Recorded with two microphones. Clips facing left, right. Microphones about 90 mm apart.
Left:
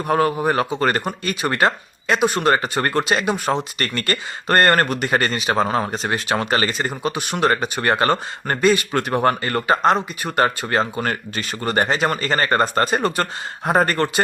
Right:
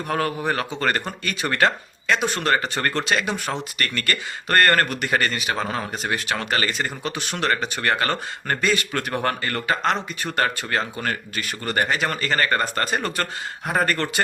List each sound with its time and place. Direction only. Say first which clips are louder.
0.1 s speech: left 6 dB; 20° left (ahead or behind)